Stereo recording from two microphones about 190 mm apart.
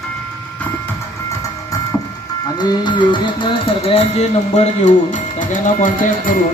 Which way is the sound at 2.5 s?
25° left (ahead or behind).